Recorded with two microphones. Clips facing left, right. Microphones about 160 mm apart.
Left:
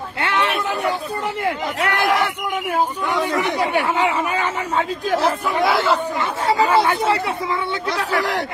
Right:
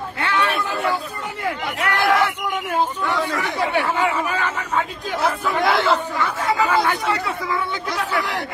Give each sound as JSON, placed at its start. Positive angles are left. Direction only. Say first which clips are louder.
{"t": 0.2, "sound": "a sound", "louder": "left 1 dB", "side_deg": 25}
{"t": 1.4, "sound": "speech", "louder": "even", "side_deg": 25}
{"t": 5.6, "sound": "speech", "louder": "even", "side_deg": 5}
{"t": 6.1, "sound": "speech", "louder": "left 2 dB", "side_deg": 30}